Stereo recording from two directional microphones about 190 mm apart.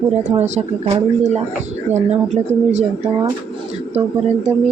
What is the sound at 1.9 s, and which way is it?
Speech, 35° right (ahead or behind).